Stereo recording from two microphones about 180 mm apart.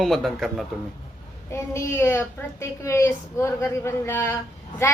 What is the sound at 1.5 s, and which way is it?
A woman's voice, 15° left (ahead or behind).